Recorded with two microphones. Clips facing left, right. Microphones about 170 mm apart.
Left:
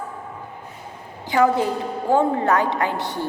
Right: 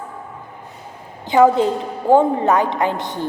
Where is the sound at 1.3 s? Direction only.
20° right (ahead or behind).